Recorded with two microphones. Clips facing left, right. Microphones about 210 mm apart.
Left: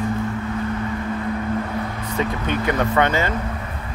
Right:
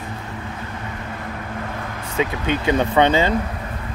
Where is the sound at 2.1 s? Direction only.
15° right (ahead or behind).